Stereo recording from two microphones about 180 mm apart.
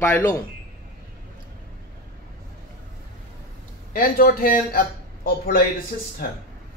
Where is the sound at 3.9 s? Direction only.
55° left (ahead or behind).